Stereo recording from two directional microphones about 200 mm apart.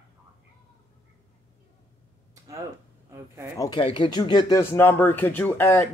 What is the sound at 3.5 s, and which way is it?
Speech, 15° left (ahead or behind).